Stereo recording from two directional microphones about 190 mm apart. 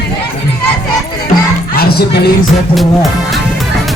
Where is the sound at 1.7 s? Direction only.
55° left (ahead or behind).